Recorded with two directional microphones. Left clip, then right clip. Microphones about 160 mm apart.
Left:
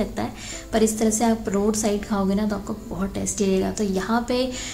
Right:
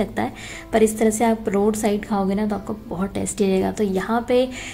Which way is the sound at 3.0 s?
25° right (ahead or behind).